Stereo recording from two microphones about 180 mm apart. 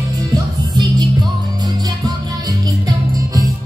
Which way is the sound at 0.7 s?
20° right (ahead or behind).